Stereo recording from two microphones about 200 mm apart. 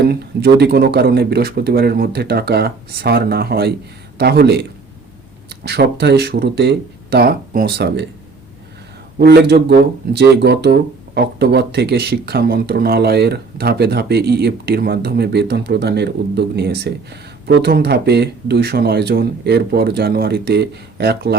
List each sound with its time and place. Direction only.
0.0 s speech: 55° right (ahead or behind)
9.1 s speech: 55° right (ahead or behind)